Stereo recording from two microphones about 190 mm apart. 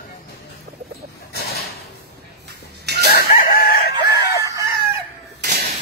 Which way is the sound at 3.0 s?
55° left (ahead or behind).